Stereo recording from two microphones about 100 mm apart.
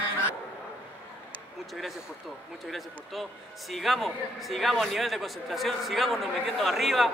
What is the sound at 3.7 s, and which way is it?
A man's voice, centre (ahead or behind).